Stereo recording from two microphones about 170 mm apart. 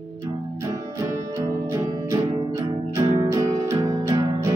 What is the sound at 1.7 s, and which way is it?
Music, 15° right (ahead or behind).